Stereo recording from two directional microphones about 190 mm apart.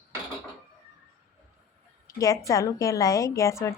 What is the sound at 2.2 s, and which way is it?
Speech, 15° left (ahead or behind).